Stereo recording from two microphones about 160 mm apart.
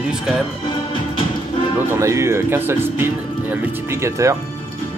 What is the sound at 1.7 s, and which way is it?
Speech, 20° right (ahead or behind).